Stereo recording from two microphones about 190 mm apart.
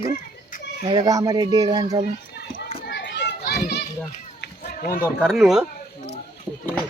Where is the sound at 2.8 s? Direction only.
70° left (ahead or behind).